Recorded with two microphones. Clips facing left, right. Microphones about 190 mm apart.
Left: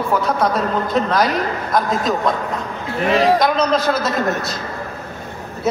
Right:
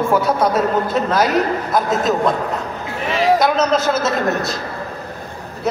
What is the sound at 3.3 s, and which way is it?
Speech, 5° right (ahead or behind).